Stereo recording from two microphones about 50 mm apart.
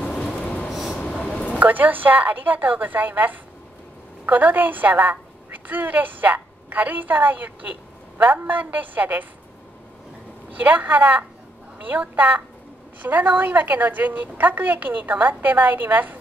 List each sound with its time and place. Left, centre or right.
0.1 s train: centre
0.7 s train: centre
1.2 s a sound: left
1.6 s a woman's voice: right
10.6 s a woman's voice: right